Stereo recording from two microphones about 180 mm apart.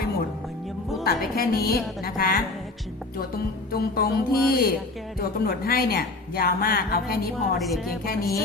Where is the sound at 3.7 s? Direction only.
55° left (ahead or behind).